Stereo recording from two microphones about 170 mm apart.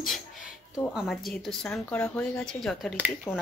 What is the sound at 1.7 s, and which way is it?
Speech, 15° left (ahead or behind).